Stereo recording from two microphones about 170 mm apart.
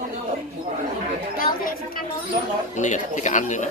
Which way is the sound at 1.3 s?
55° left (ahead or behind).